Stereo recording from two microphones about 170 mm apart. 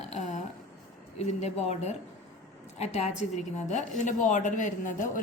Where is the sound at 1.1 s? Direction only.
40° left (ahead or behind).